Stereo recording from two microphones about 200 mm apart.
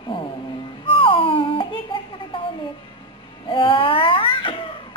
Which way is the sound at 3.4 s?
25° left (ahead or behind).